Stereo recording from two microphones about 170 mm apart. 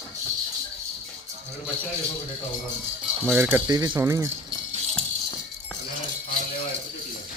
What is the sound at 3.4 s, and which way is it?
Speech, 10° right (ahead or behind).